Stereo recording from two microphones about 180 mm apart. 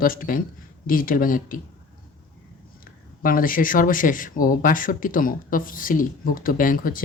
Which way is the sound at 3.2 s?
50° left (ahead or behind).